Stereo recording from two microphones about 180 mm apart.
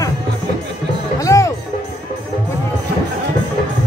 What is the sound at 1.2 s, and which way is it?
Music, 20° left (ahead or behind).